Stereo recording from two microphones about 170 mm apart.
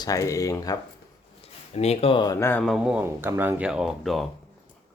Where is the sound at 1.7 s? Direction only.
40° left (ahead or behind); by 2.7 s 10° left (ahead or behind).